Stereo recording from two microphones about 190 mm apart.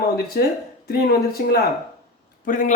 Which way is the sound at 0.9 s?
55° left (ahead or behind).